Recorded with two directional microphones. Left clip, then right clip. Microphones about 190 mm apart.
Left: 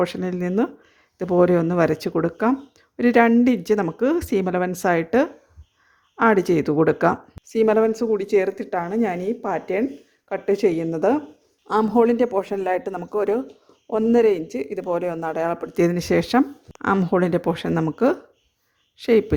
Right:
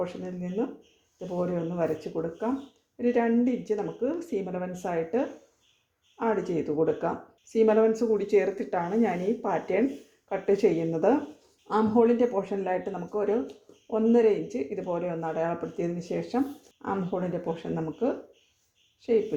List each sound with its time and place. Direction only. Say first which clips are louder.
0.0 s speech: left 10 dB; 50° left (ahead or behind)